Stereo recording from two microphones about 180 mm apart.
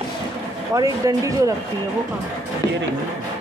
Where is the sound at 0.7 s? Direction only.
20° right (ahead or behind).